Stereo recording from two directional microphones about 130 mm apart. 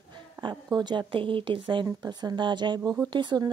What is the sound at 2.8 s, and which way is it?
Speech, 25° right (ahead or behind).